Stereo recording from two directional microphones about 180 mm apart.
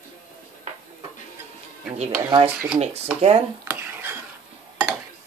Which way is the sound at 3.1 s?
35° right (ahead or behind).